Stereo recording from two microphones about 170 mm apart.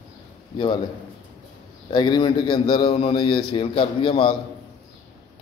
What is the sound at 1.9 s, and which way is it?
A man's voice, 25° left (ahead or behind).